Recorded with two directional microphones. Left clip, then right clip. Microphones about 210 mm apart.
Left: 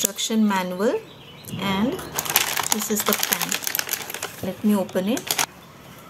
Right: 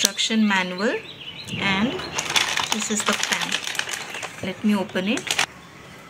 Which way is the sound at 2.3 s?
30° left (ahead or behind).